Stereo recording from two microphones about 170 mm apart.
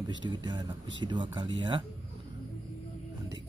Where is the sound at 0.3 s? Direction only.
25° right (ahead or behind).